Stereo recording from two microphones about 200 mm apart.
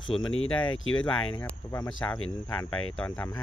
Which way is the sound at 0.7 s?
80° left.